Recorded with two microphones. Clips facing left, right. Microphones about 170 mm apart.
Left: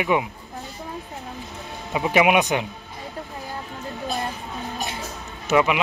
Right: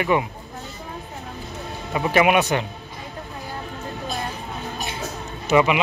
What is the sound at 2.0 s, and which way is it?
Speech, 10° left (ahead or behind).